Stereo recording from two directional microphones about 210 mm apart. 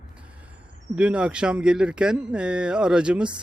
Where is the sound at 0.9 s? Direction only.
5° right (ahead or behind).